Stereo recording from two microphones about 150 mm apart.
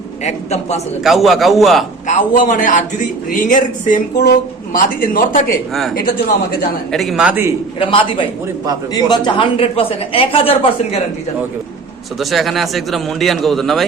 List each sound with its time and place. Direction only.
0.3 s a man's voice: 45° left (ahead or behind)
1.0 s a man's voice: centre (ahead or behind)
2.0 s a man's voice: 60° left (ahead or behind)
6.9 s a man's voice: centre (ahead or behind)
7.8 s a woman's voice: 35° left (ahead or behind)
12.2 s a man's voice: centre (ahead or behind)